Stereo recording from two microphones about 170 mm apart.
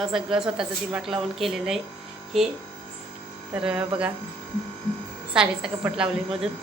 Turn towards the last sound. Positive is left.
turn(degrees=-5)  # may be behind; listen again after turning